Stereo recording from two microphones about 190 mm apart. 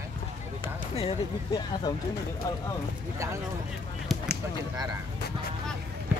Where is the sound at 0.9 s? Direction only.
25° left (ahead or behind).